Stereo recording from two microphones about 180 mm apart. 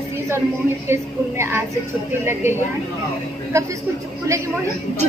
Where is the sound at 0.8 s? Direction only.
15° right (ahead or behind).